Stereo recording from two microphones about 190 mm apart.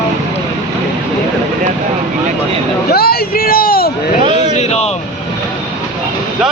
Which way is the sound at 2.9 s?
55° left (ahead or behind).